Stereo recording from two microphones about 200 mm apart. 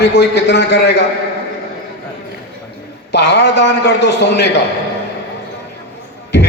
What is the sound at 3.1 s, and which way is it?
A man's voice, 60° left (ahead or behind).